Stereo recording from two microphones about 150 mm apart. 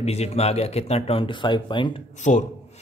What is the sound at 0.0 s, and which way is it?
Speech, 45° left (ahead or behind).